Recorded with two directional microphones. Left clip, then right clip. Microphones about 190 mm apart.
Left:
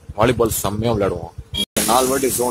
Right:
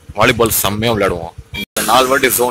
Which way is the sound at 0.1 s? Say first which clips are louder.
Right 5 dB; centre (ahead or behind).